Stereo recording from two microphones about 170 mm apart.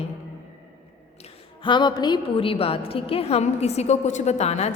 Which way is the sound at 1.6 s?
25° left (ahead or behind).